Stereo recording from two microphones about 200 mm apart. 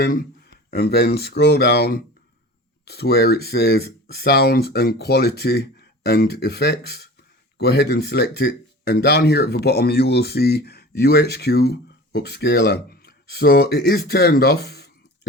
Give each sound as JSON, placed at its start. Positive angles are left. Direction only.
{"t": 0.0, "sound": "speech", "side_deg": 45}